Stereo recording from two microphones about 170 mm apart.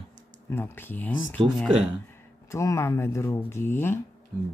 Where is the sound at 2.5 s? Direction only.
15° left (ahead or behind).